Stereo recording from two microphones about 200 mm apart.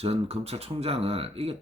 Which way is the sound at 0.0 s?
30° right (ahead or behind).